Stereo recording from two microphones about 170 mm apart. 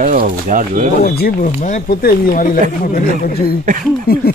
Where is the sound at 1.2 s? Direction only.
55° left (ahead or behind).